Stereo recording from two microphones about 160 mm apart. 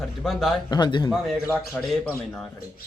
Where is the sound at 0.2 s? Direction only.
Centre (ahead or behind).